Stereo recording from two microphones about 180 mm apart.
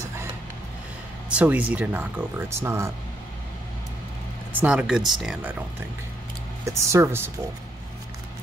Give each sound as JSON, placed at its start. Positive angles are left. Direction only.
{"t": 1.3, "sound": "speech", "side_deg": -10}
{"t": 4.6, "sound": "speech", "side_deg": -5}
{"t": 6.6, "sound": "speech", "side_deg": -15}